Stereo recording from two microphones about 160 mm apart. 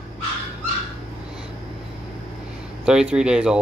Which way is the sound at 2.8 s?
5° right (ahead or behind).